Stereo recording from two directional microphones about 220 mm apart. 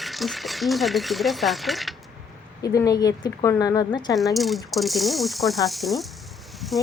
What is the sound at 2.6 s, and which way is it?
Speech, 15° left (ahead or behind).